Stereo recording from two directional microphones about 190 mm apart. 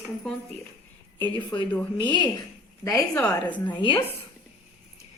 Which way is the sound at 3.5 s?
25° left (ahead or behind).